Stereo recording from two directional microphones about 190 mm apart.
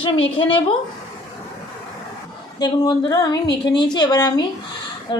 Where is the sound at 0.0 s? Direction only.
30° left (ahead or behind).